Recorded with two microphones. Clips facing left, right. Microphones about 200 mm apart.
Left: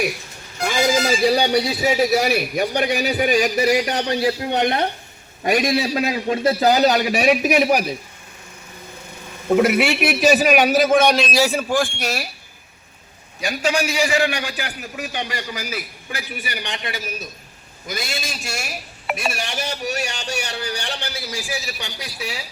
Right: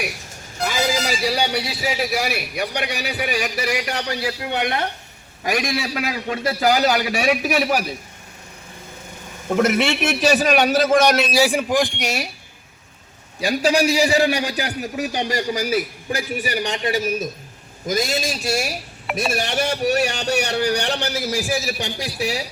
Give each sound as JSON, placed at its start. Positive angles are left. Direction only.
{"t": 1.5, "sound": "a man's voice", "side_deg": 20}
{"t": 2.2, "sound": "a man's voice", "side_deg": 45}
{"t": 3.8, "sound": "a man's voice", "side_deg": 20}
{"t": 9.5, "sound": "a man's voice", "side_deg": 10}
{"t": 11.2, "sound": "a man's voice", "side_deg": -10}
{"t": 13.4, "sound": "a man's voice", "side_deg": -35}
{"t": 19.5, "sound": "a man's voice", "side_deg": -60}
{"t": 21.5, "sound": "a man's voice", "side_deg": -35}